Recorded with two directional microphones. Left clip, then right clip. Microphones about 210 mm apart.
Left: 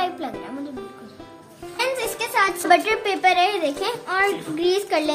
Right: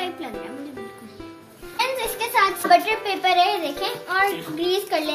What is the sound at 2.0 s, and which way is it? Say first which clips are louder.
Music: even; 50° left (ahead or behind).